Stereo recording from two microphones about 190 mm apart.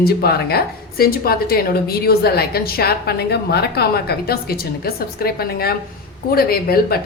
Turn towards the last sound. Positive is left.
turn(degrees=55)  # may be behind; listen again after turning